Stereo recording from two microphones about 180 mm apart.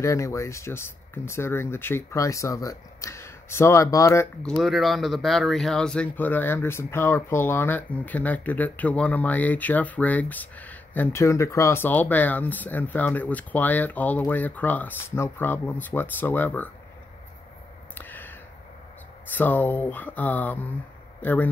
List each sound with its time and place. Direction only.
0.0 s speech: 15° left (ahead or behind)
4.6 s speech: centre (ahead or behind)
17.9 s a sound: 10° left (ahead or behind)
19.3 s speech: 10° left (ahead or behind)